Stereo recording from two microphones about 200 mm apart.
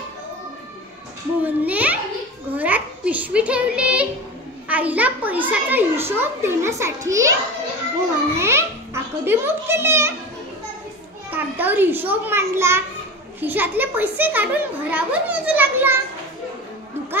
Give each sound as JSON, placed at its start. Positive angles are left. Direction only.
{"t": 1.4, "sound": "a child's voice", "side_deg": -10}
{"t": 8.4, "sound": "a child's voice", "side_deg": -15}
{"t": 11.2, "sound": "a child's voice", "side_deg": -10}